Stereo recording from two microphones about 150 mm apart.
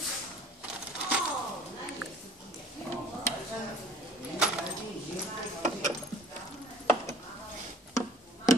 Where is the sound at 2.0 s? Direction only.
Centre (ahead or behind).